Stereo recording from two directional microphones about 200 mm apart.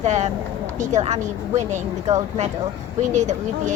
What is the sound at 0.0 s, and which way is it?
A woman's voice, 35° right (ahead or behind).